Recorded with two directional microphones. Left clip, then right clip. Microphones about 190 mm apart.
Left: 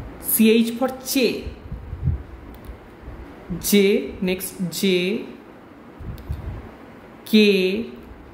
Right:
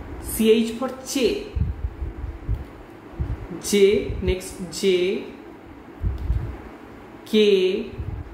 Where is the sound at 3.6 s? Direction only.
40° left (ahead or behind).